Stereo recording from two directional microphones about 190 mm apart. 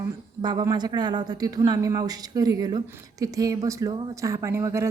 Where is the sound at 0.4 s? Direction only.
20° right (ahead or behind).